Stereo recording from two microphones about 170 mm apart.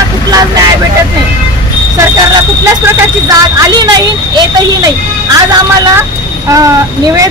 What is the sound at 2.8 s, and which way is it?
Speech, 20° right (ahead or behind).